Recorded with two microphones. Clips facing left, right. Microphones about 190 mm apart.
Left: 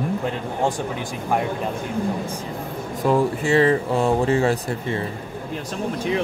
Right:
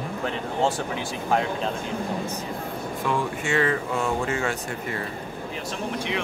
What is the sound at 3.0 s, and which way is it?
Speech, 35° left (ahead or behind).